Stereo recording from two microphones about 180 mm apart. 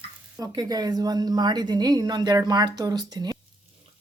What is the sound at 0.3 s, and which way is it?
A woman's voice, 20° right (ahead or behind).